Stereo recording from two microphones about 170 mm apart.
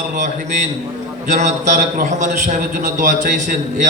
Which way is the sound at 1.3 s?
45° right (ahead or behind).